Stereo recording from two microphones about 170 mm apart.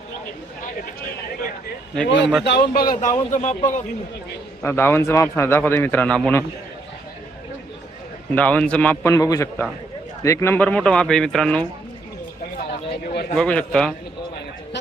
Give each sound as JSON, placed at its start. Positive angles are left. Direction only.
{"t": 2.0, "sound": "speech", "side_deg": 90}
{"t": 2.4, "sound": "speech", "side_deg": 75}
{"t": 3.3, "sound": "speech", "side_deg": 45}
{"t": 4.6, "sound": "a man's voice", "side_deg": 15}
{"t": 8.4, "sound": "a man's voice", "side_deg": 10}
{"t": 13.1, "sound": "a sound", "side_deg": 55}
{"t": 13.3, "sound": "speech", "side_deg": 5}